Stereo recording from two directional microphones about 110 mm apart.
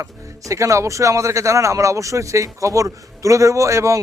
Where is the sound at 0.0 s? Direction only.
30° right (ahead or behind).